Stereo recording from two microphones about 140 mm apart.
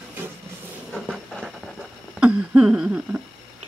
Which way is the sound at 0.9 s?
5° right (ahead or behind).